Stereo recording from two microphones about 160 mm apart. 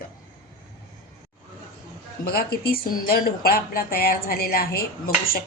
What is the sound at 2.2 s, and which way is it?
A woman's voice, 75° left (ahead or behind).